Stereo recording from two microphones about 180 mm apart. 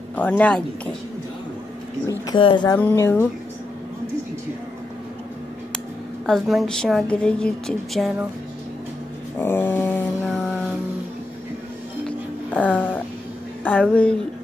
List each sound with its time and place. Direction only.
0.1 s a woman's voice: 10° left (ahead or behind)
2.0 s speech: 25° left (ahead or behind)
2.8 s a woman's voice: 10° left (ahead or behind)
6.2 s a woman's voice: centre (ahead or behind)
9.4 s mantra: 10° left (ahead or behind)
12.5 s a sound: 10° left (ahead or behind)
13.7 s a woman's voice: 10° left (ahead or behind)